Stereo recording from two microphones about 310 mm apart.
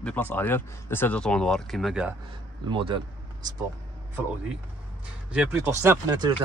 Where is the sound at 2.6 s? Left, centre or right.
Centre.